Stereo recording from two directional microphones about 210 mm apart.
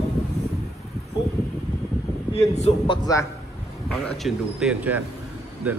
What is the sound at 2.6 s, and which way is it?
Speech, 30° left (ahead or behind).